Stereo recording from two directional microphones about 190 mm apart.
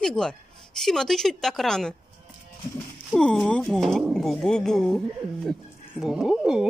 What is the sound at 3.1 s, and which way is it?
Speech, 5° left (ahead or behind).